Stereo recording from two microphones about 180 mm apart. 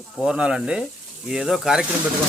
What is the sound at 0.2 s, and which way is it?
Speech, 5° right (ahead or behind).